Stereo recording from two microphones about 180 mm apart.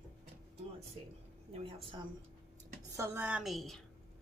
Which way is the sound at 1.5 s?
30° right (ahead or behind).